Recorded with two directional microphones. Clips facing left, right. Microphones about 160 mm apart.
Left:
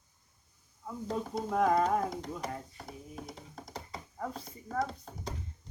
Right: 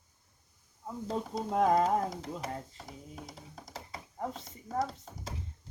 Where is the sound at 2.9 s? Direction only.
Centre (ahead or behind).